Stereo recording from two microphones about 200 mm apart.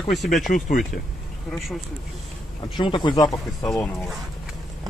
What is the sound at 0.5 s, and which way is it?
Speech, 40° left (ahead or behind).